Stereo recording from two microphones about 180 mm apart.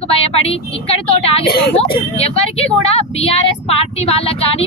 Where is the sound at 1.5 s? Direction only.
65° left (ahead or behind).